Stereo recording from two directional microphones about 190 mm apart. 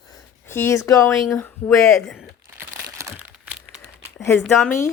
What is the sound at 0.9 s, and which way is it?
Speech, 15° left (ahead or behind).